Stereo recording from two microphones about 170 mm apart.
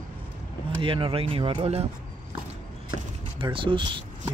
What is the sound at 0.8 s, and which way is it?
Speech, 30° right (ahead or behind).